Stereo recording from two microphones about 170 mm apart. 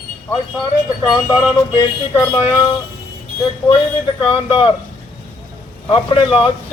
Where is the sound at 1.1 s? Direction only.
20° left (ahead or behind).